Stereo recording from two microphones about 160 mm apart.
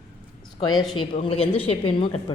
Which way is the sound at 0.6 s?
25° left (ahead or behind).